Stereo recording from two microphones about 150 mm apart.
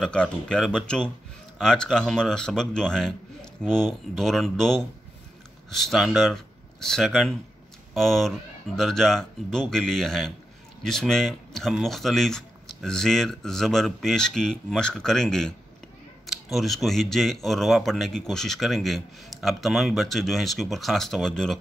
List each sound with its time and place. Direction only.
0.0 s speech: 5° left (ahead or behind)